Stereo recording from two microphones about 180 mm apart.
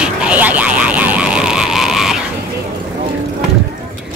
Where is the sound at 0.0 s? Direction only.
5° right (ahead or behind).